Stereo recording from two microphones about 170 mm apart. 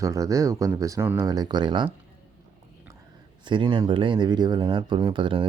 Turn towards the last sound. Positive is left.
turn(degrees=-30)  # may be behind; listen again after turning